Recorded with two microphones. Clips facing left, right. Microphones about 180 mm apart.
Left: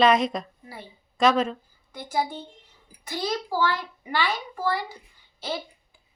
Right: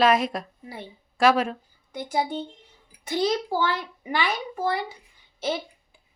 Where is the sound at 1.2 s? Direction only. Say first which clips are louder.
Right 1 dB; 10° right (ahead or behind).